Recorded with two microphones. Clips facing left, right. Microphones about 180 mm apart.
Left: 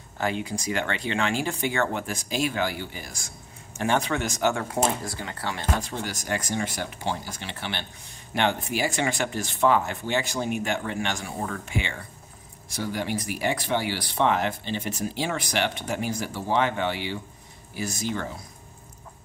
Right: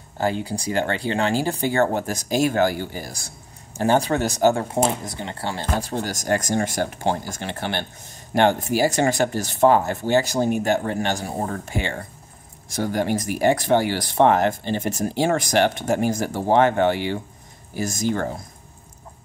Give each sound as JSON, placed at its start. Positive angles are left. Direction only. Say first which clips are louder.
{"t": 0.2, "sound": "speech", "louder": "right 4 dB", "side_deg": -35}